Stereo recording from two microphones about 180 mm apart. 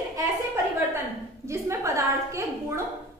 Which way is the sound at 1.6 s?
15° right (ahead or behind).